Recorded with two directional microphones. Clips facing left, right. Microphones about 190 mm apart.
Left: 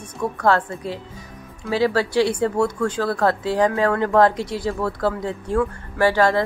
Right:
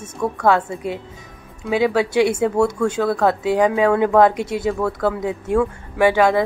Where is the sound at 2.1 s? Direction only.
20° right (ahead or behind).